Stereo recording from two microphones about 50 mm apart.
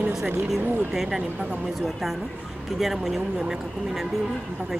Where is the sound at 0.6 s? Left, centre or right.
Right.